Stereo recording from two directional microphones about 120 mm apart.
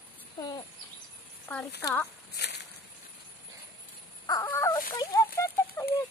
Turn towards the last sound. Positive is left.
turn(degrees=20)  # may be behind; listen again after turning